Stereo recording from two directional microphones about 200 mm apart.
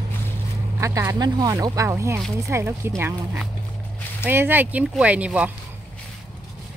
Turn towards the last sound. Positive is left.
turn(degrees=-5)  # may be behind; listen again after turning